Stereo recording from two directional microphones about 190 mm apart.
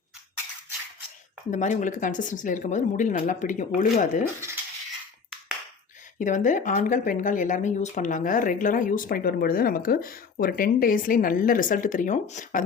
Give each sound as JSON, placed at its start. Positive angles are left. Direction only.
{"t": 1.5, "sound": "a woman's voice", "side_deg": 40}
{"t": 4.2, "sound": "speech", "side_deg": -15}
{"t": 6.1, "sound": "a woman's voice", "side_deg": 40}